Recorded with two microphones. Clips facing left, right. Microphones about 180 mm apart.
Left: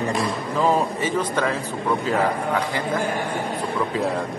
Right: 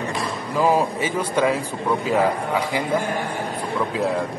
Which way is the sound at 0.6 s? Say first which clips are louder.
Right 2 dB; 10° right (ahead or behind).